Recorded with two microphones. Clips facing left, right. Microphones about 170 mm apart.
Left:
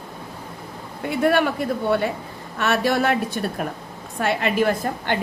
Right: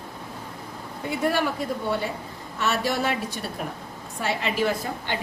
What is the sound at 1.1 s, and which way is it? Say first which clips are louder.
Speech: left 5 dB; 60° left (ahead or behind).